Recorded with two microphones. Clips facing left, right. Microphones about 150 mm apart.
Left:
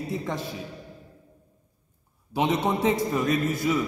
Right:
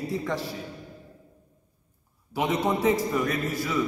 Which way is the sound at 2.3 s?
25° left (ahead or behind).